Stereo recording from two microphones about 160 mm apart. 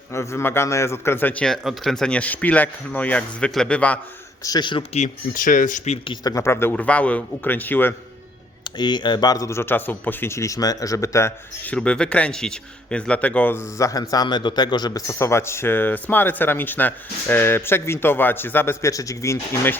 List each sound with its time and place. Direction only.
0.1 s speech: 15° left (ahead or behind)
4.4 s speech: 25° left (ahead or behind)
4.9 s speech: 55° left (ahead or behind)
6.1 s speech: 20° left (ahead or behind)
8.8 s speech: 30° left (ahead or behind)